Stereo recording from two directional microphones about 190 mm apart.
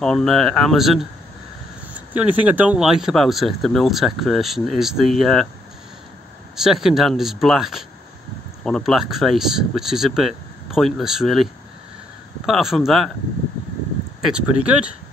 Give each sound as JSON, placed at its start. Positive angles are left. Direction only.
{"t": 0.0, "sound": "speech", "side_deg": 5}
{"t": 6.5, "sound": "speech", "side_deg": 0}
{"t": 12.4, "sound": "speech", "side_deg": 0}
{"t": 14.2, "sound": "speech", "side_deg": -5}